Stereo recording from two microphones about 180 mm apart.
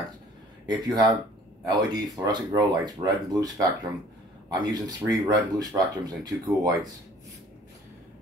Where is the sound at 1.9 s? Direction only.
25° right (ahead or behind).